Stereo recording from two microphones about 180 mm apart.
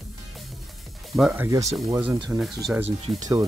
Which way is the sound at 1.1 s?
5° right (ahead or behind).